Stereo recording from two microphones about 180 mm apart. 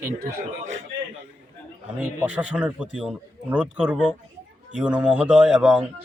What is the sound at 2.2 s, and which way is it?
A man's voice, 10° right (ahead or behind).